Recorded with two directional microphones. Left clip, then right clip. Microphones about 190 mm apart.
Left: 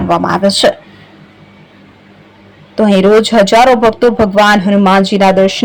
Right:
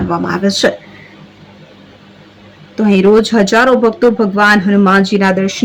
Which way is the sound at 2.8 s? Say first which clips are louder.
Left 2 dB; 20° left (ahead or behind).